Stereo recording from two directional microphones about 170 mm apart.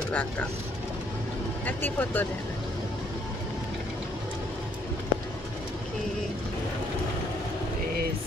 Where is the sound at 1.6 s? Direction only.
10° left (ahead or behind).